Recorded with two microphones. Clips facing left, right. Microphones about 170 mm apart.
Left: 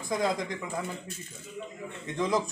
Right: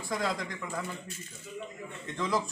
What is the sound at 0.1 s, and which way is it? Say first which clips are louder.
Speech: left 4 dB; 20° left (ahead or behind).